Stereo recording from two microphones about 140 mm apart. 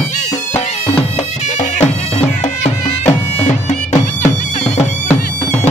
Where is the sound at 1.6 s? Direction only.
55° left (ahead or behind).